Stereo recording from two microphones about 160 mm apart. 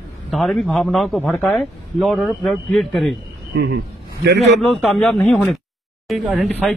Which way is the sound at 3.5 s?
90° right.